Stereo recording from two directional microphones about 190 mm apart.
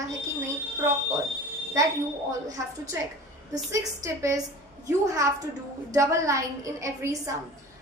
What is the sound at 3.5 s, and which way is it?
Speech, 15° right (ahead or behind).